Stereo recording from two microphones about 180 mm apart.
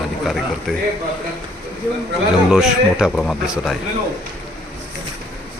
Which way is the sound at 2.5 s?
5° right (ahead or behind).